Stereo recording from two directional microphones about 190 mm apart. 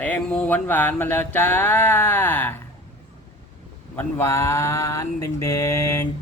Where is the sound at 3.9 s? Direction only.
10° left (ahead or behind).